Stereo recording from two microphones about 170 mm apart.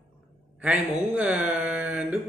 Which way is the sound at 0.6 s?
10° right (ahead or behind).